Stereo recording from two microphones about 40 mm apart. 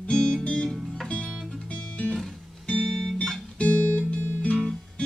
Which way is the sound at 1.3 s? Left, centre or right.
Centre.